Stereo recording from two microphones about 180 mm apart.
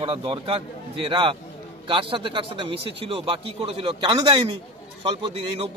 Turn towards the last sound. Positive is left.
turn(degrees=-30)  # may be behind; listen again after turning